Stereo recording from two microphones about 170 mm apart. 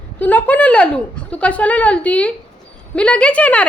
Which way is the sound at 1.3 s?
10° left (ahead or behind).